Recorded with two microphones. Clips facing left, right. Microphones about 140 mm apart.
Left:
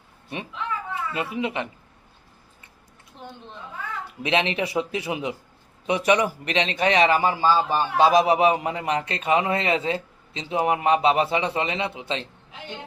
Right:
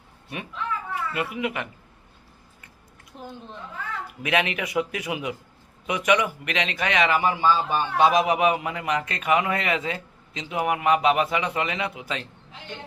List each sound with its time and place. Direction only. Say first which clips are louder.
0.3 s a sound: even; 25° left (ahead or behind)
3.2 s a woman's voice: right 2 dB; centre (ahead or behind)
4.0 s speech: left 1 dB; 25° left (ahead or behind)